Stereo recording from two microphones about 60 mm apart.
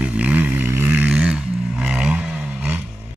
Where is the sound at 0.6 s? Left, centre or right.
Right.